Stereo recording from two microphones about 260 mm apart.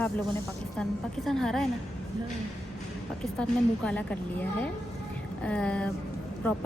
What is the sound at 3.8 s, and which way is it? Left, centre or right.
Speech, centre.